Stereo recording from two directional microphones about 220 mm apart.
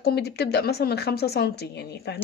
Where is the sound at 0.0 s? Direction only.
45° left (ahead or behind).